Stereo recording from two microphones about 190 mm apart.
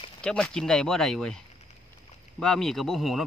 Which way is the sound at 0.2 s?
5° left (ahead or behind).